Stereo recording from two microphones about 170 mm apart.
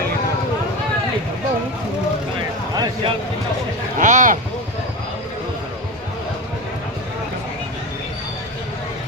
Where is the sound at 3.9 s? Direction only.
50° right (ahead or behind).